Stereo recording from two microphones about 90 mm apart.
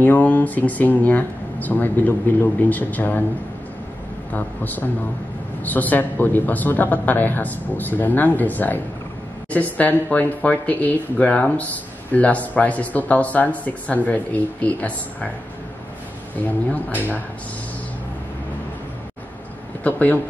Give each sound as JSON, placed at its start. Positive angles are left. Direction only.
{"t": 0.0, "sound": "speech", "side_deg": 20}
{"t": 4.3, "sound": "speech", "side_deg": 20}
{"t": 16.4, "sound": "speech", "side_deg": 20}
{"t": 19.8, "sound": "a man's voice", "side_deg": 15}